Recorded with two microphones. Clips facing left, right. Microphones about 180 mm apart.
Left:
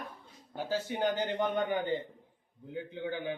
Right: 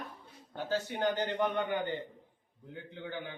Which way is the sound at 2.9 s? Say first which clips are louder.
Left 5 dB; 15° left (ahead or behind).